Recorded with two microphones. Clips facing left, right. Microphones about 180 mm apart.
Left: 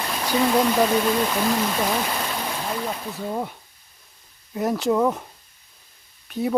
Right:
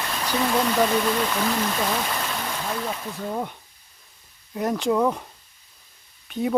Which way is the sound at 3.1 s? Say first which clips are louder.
Left 1 dB; 5° left (ahead or behind).